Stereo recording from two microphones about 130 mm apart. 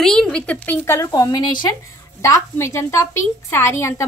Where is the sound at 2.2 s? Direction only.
20° left (ahead or behind).